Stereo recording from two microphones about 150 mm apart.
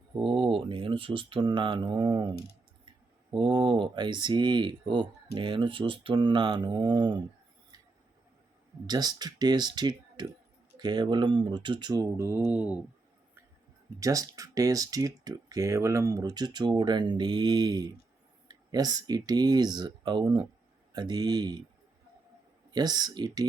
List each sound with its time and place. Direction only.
0.2 s speech: 35° right (ahead or behind)
3.3 s speech: 30° right (ahead or behind)
8.9 s speech: 25° right (ahead or behind); by 12.8 s 10° right (ahead or behind)
14.0 s speech: 20° right (ahead or behind)
22.7 s speech: 25° right (ahead or behind)